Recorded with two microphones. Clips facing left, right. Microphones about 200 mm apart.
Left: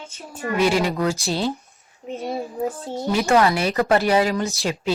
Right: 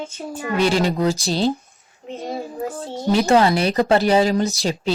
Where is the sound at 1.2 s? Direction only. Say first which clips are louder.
Right 3 dB; 35° right (ahead or behind).